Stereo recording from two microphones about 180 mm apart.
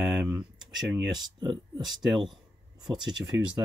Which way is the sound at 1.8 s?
Centre (ahead or behind).